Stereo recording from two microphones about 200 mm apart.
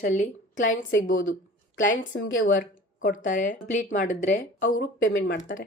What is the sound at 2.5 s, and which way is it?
A woman's voice, 40° left (ahead or behind).